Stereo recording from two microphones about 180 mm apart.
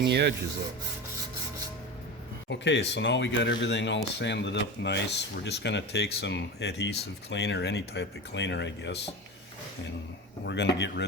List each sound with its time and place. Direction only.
0.0 s speech: 70° right (ahead or behind)
2.5 s speech: 80° left
10.4 s speech: 70° left (ahead or behind)